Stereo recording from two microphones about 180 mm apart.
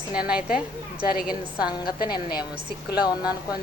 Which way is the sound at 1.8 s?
55° left (ahead or behind).